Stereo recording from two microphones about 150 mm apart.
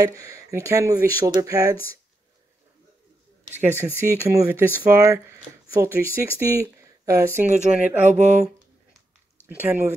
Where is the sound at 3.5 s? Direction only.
15° right (ahead or behind).